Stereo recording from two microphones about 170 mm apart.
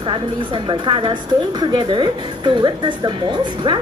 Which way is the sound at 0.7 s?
30° right (ahead or behind).